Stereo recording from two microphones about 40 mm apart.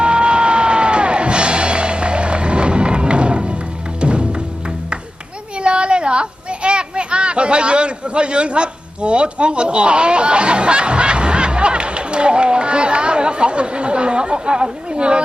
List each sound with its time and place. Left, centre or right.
0.0 s music: right
5.5 s children playing: right